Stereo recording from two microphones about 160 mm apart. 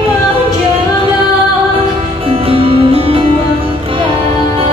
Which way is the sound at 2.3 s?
35° right (ahead or behind).